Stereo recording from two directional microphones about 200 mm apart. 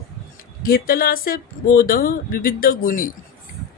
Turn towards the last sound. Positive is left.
turn(degrees=45)  # may be behind; listen again after turning